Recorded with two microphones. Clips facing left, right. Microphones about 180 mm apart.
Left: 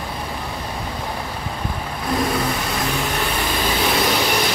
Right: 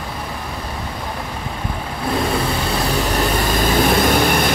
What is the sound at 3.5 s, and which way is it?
Vehicle, 50° right (ahead or behind).